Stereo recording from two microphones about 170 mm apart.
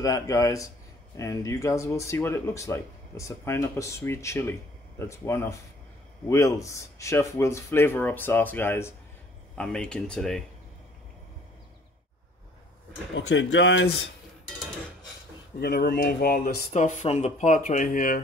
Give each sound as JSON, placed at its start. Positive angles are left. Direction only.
{"t": 0.0, "sound": "speech", "side_deg": 20}
{"t": 13.1, "sound": "speech", "side_deg": 90}
{"t": 15.6, "sound": "speech", "side_deg": 65}
{"t": 16.7, "sound": "speech", "side_deg": 45}